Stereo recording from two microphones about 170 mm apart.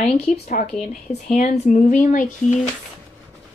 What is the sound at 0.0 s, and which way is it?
A woman's voice, 45° left (ahead or behind).